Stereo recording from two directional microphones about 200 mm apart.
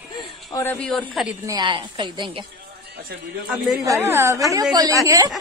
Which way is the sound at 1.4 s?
20° right (ahead or behind).